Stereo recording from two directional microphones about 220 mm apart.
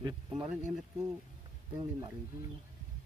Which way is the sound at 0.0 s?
20° right (ahead or behind).